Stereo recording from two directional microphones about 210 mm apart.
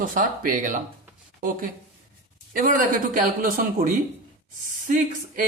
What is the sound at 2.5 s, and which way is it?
Speech, 40° right (ahead or behind).